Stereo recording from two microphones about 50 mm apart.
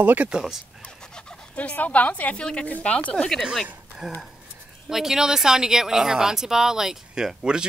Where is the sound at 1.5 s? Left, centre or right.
Left.